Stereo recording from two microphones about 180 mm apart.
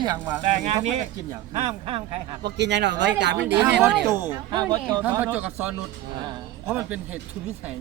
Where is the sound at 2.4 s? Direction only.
70° right (ahead or behind).